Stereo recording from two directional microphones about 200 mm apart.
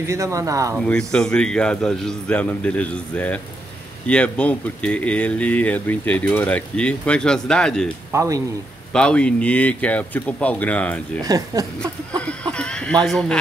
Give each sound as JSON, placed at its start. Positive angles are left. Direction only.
{"t": 0.0, "sound": "speech", "side_deg": -15}
{"t": 0.7, "sound": "a man's voice", "side_deg": 5}
{"t": 8.1, "sound": "speech", "side_deg": -15}
{"t": 8.9, "sound": "speech", "side_deg": 5}
{"t": 11.2, "sound": "speech", "side_deg": -15}
{"t": 12.2, "sound": "a sound", "side_deg": 5}
{"t": 13.0, "sound": "a man's voice", "side_deg": 5}